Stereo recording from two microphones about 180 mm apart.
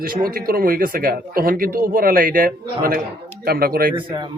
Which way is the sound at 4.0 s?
25° right (ahead or behind).